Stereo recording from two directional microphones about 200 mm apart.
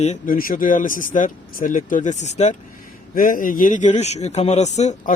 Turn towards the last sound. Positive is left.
turn(degrees=35)  # may be behind; listen again after turning